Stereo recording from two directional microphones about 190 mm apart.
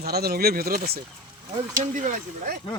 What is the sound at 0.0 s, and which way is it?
Speech, 55° right (ahead or behind).